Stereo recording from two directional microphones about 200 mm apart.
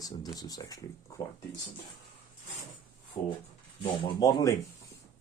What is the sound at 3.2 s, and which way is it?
Speech, 20° left (ahead or behind).